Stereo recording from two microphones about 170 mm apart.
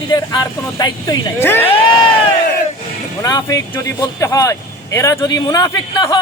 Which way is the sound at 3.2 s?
20° left (ahead or behind).